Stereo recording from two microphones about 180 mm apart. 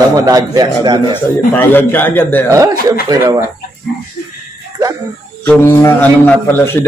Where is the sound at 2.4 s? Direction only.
15° right (ahead or behind).